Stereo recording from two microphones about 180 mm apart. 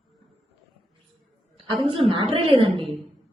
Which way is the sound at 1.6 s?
30° right (ahead or behind).